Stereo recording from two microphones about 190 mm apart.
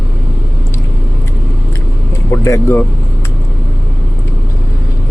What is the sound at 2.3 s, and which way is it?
Vehicle, 15° left (ahead or behind).